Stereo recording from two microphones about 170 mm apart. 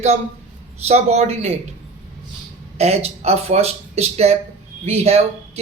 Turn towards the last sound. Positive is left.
turn(degrees=-40)  # may be behind; listen again after turning